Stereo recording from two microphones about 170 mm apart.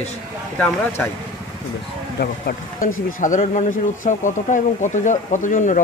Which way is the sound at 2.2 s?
55° left (ahead or behind).